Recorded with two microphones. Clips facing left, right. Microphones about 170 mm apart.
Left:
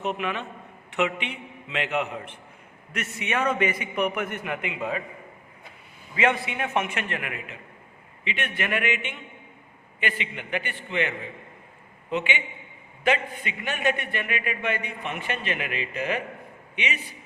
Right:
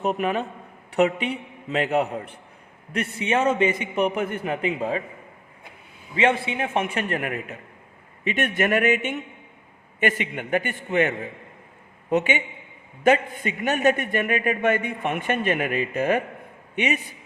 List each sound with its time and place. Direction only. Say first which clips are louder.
0.0 s a man's voice: right 5 dB; 40° right (ahead or behind)
6.1 s a man's voice: right 3 dB; 30° right (ahead or behind); by 17.0 s 50° right (ahead or behind)